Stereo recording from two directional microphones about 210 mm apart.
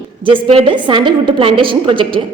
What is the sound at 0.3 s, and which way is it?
A woman's voice, 25° right (ahead or behind).